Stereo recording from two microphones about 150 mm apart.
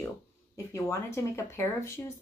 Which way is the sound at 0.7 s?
20° left (ahead or behind).